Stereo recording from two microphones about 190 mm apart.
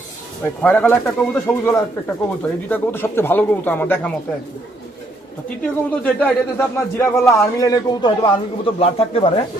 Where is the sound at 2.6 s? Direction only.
10° left (ahead or behind).